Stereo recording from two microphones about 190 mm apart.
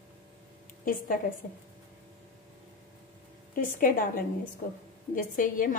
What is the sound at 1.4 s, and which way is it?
Speech, 45° left (ahead or behind).